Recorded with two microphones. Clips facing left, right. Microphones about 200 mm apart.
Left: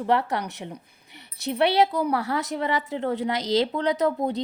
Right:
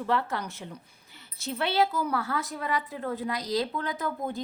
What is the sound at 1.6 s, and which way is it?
Speech, 70° left (ahead or behind).